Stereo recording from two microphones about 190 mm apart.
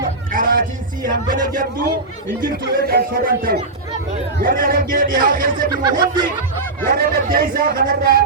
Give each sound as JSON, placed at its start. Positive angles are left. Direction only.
{"t": 0.3, "sound": "a man's voice", "side_deg": -50}
{"t": 5.7, "sound": "speech", "side_deg": -20}
{"t": 6.8, "sound": "a man's voice", "side_deg": -50}